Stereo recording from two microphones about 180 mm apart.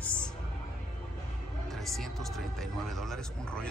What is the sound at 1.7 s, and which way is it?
Speech, centre (ahead or behind).